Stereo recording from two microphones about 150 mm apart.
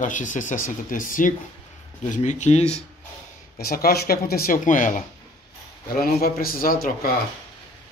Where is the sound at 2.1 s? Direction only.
50° left (ahead or behind).